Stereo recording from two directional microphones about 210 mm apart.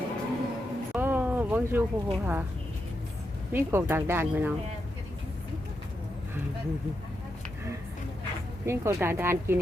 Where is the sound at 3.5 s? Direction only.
10° right (ahead or behind).